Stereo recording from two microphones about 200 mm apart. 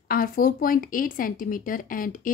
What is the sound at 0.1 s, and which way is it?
A woman's voice, 45° left (ahead or behind).